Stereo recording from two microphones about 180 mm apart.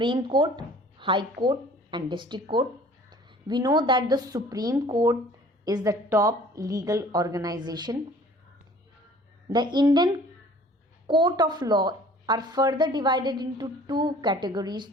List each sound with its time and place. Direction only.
0.0 s a woman's voice: 25° right (ahead or behind)
9.5 s a woman's voice: 25° right (ahead or behind)